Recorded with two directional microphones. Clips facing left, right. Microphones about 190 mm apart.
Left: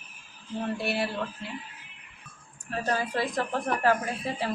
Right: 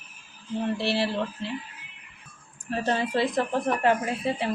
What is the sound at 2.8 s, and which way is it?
Speech, 25° right (ahead or behind).